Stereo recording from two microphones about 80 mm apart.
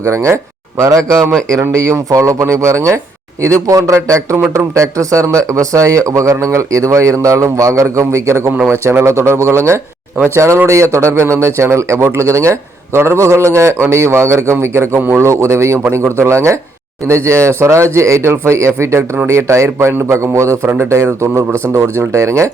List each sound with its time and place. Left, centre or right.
0.0 s speech: right
14.9 s a man's voice: right
15.2 s speech: right